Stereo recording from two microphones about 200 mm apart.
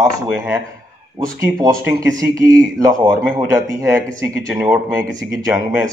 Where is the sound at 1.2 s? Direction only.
20° right (ahead or behind).